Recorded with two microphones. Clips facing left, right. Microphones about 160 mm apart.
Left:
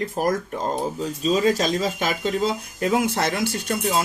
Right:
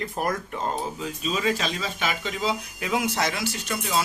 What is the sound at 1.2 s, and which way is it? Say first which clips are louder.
Speech: left 6 dB; 40° left (ahead or behind).